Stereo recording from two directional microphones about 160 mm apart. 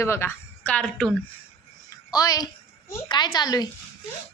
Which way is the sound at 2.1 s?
25° left (ahead or behind).